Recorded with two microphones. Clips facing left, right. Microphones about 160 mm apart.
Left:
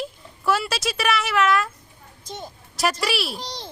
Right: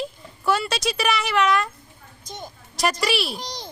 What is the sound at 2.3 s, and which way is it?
Speech, 30° left (ahead or behind).